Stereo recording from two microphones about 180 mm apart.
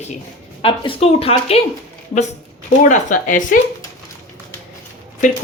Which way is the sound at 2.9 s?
45° left (ahead or behind).